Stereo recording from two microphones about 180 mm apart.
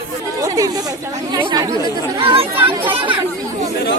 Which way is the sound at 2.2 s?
30° right (ahead or behind).